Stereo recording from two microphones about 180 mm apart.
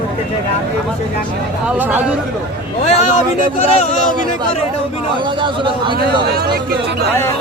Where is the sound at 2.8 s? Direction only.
40° left (ahead or behind).